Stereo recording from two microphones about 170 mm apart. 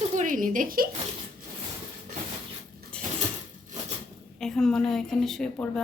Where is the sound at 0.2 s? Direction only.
50° right (ahead or behind).